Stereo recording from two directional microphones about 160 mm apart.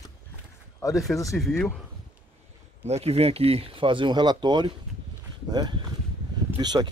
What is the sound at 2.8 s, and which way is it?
Speech, 40° right (ahead or behind).